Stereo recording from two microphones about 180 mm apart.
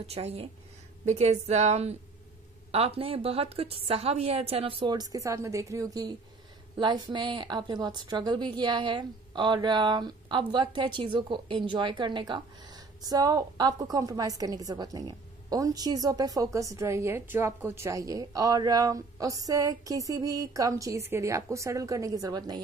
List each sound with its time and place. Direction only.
0.0 s a woman's voice: 35° right (ahead or behind)